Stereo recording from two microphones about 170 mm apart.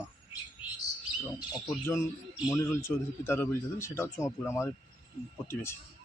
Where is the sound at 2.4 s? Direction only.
15° left (ahead or behind).